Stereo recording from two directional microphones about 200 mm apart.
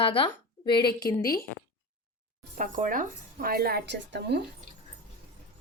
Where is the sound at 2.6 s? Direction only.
40° right (ahead or behind); by 4.4 s 60° right (ahead or behind).